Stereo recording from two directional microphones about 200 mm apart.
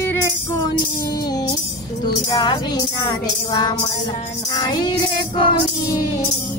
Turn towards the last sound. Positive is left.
turn(degrees=15)  # may be behind; listen again after turning